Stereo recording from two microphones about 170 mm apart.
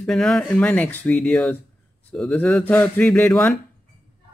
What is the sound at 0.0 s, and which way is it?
Speech, centre (ahead or behind).